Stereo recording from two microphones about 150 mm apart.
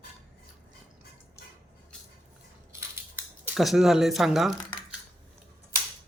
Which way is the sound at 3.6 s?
Centre (ahead or behind).